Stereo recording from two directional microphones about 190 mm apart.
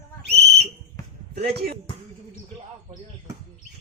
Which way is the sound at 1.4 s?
60° right (ahead or behind).